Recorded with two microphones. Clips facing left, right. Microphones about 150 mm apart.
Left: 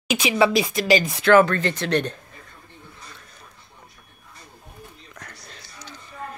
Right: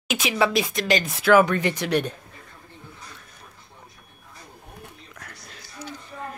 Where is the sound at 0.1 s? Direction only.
Centre (ahead or behind).